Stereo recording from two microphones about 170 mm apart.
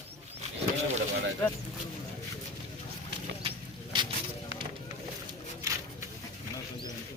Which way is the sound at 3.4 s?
30° right (ahead or behind).